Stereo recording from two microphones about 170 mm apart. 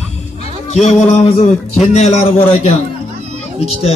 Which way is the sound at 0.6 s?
40° left (ahead or behind).